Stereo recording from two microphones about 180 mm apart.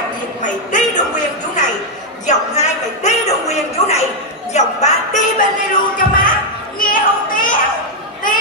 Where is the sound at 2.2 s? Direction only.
40° left (ahead or behind).